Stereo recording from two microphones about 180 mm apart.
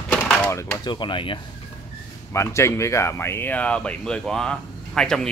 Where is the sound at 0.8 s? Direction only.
25° left (ahead or behind).